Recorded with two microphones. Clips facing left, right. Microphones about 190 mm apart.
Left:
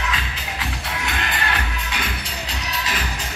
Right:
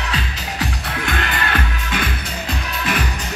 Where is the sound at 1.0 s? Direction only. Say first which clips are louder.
Right 3 dB; 55° right (ahead or behind).